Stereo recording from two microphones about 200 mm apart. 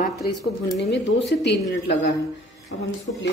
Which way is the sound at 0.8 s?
60° left (ahead or behind).